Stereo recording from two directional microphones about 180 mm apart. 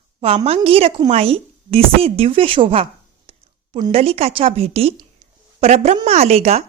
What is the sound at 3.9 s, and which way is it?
A woman's voice, 35° right (ahead or behind).